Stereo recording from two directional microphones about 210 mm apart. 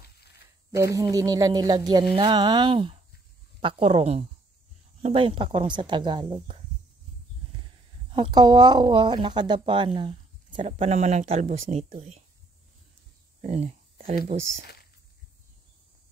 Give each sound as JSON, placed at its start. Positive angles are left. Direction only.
{"t": 0.7, "sound": "speech", "side_deg": -15}
{"t": 8.1, "sound": "speech", "side_deg": -20}
{"t": 13.4, "sound": "speech", "side_deg": -30}